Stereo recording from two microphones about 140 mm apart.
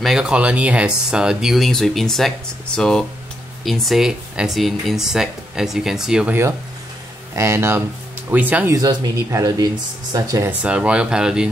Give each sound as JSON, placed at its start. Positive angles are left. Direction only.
{"t": 0.0, "sound": "speech", "side_deg": -5}
{"t": 8.7, "sound": "speech", "side_deg": -25}
{"t": 10.6, "sound": "speech", "side_deg": -10}